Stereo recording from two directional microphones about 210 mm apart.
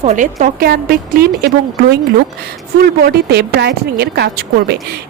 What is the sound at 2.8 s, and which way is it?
A woman's voice, 50° right (ahead or behind).